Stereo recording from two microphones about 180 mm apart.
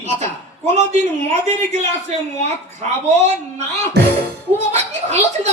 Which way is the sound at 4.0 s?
65° right (ahead or behind).